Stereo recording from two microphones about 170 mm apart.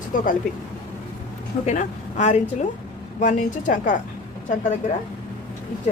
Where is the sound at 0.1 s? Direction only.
50° left (ahead or behind).